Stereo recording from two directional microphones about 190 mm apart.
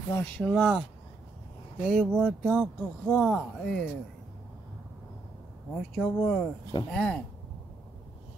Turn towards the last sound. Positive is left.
turn(degrees=5)  # may be behind; listen again after turning